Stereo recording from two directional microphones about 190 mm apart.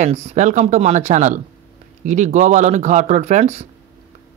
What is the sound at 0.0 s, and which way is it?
Speech, 35° right (ahead or behind).